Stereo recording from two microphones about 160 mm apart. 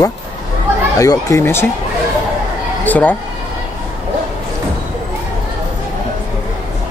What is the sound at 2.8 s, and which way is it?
Speech, 10° left (ahead or behind).